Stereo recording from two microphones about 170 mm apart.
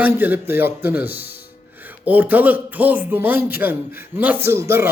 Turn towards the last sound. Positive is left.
turn(degrees=-15)  # may be behind; listen again after turning